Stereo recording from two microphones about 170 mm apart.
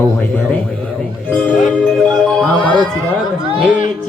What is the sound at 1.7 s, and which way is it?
Music, 5° left (ahead or behind).